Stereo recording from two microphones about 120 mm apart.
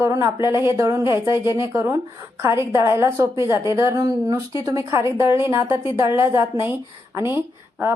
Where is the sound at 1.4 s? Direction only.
35° left (ahead or behind).